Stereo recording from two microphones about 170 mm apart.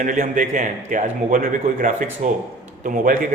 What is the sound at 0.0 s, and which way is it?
A man's voice, 50° right (ahead or behind).